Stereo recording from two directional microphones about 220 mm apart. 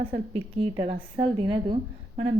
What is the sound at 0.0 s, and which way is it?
A woman's voice, 25° right (ahead or behind).